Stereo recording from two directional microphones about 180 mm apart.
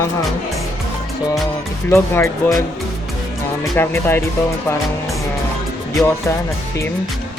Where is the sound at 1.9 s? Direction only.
15° left (ahead or behind).